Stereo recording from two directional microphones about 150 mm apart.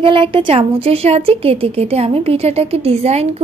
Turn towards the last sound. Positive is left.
turn(degrees=-45)  # may be behind; listen again after turning